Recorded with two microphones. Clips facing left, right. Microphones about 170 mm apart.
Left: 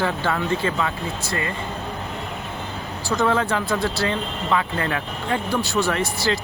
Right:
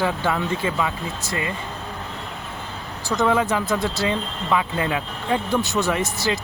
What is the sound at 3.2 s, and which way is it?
Speech, 15° right (ahead or behind).